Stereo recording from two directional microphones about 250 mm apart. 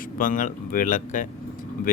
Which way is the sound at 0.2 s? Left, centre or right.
Left.